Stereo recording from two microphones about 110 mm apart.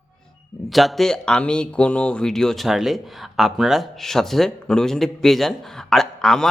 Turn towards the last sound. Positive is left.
turn(degrees=5)  # may be behind; listen again after turning